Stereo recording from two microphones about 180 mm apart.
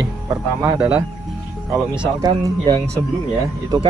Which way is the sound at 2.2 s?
20° right (ahead or behind).